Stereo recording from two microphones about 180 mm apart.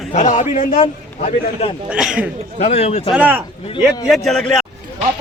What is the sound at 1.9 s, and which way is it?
Speech, 5° right (ahead or behind).